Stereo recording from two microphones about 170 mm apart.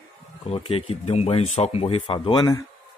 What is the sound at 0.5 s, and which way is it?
Speech, 35° left (ahead or behind).